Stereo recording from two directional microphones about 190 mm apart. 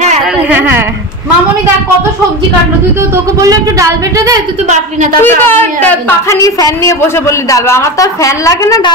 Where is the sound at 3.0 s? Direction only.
15° right (ahead or behind).